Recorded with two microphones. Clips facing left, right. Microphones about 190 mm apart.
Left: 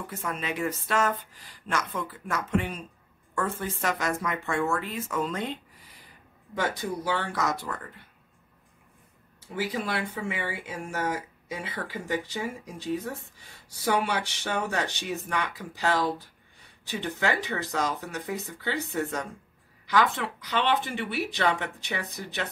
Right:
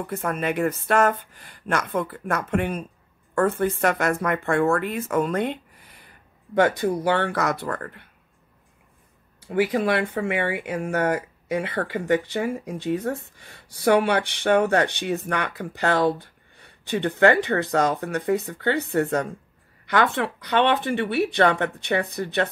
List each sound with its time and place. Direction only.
0.0 s speech: 55° right (ahead or behind)
9.5 s speech: 60° right (ahead or behind)